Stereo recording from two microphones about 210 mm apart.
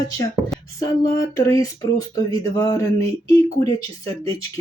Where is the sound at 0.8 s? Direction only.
15° left (ahead or behind).